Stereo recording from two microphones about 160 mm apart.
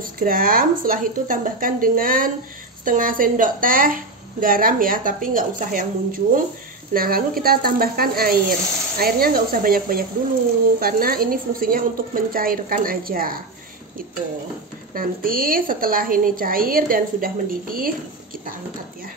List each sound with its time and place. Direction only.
0.0 s a woman's voice: 60° right (ahead or behind)
15.0 s a woman's voice: 65° right (ahead or behind)